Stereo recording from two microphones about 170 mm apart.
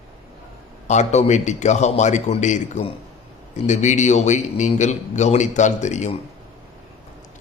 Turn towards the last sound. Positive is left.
turn(degrees=45)  # may be behind; listen again after turning